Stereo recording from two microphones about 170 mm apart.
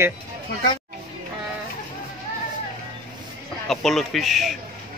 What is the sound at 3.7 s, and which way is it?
Speech, centre (ahead or behind).